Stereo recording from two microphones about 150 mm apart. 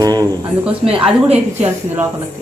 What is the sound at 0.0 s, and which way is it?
Speech, 25° right (ahead or behind).